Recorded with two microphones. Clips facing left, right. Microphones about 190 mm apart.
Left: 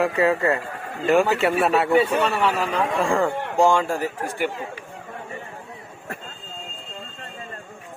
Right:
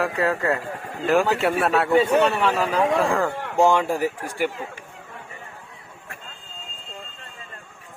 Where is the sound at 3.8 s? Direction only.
15° right (ahead or behind).